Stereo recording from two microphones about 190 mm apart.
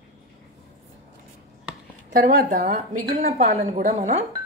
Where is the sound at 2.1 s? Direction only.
45° right (ahead or behind).